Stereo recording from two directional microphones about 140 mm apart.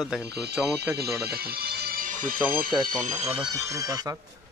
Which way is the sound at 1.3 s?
90° right.